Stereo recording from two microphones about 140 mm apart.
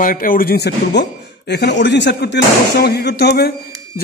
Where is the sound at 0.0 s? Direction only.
85° left.